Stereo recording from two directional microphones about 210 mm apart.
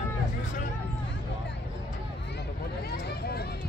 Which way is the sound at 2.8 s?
50° left (ahead or behind).